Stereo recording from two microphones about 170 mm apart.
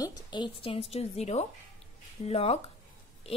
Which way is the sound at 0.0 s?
25° left (ahead or behind).